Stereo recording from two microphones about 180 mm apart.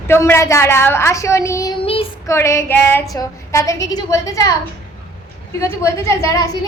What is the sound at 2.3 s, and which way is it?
A woman's voice, 15° left (ahead or behind).